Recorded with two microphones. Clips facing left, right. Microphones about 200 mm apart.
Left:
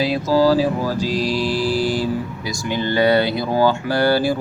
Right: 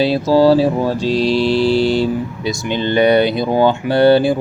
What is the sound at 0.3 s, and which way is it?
Mantra, 30° right (ahead or behind).